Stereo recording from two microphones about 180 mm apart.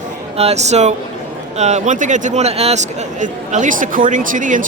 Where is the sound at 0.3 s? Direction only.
35° right (ahead or behind).